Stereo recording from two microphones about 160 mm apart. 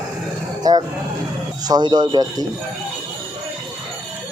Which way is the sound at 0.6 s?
25° right (ahead or behind).